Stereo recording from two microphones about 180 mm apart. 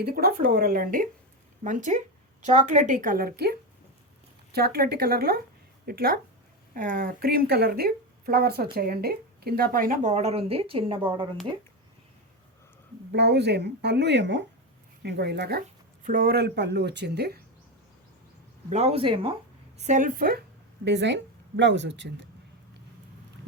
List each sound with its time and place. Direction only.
0.0 s speech: 60° right (ahead or behind); by 11.0 s 30° right (ahead or behind)
13.1 s speech: 70° right (ahead or behind)
15.0 s speech: 70° right (ahead or behind)
16.0 s speech: 55° right (ahead or behind)
18.7 s speech: 35° right (ahead or behind)
19.8 s speech: 45° right (ahead or behind)
20.8 s speech: 75° right (ahead or behind)